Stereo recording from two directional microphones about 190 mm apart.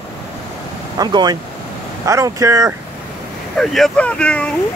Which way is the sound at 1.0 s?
20° right (ahead or behind).